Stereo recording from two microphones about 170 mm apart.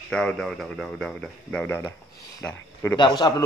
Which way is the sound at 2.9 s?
25° left (ahead or behind).